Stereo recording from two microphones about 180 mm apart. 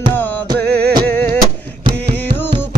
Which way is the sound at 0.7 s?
65° right (ahead or behind).